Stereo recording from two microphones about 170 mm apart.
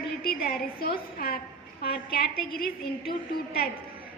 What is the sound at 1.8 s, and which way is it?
Speech, 65° left (ahead or behind).